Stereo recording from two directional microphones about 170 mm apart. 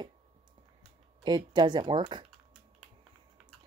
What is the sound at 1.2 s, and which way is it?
Speech, 25° right (ahead or behind).